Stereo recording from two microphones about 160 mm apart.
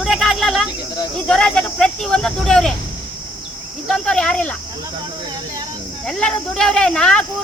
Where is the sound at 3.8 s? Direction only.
5° left (ahead or behind).